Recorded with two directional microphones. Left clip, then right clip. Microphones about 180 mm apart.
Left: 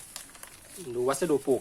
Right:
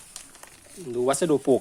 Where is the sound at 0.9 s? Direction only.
45° right (ahead or behind).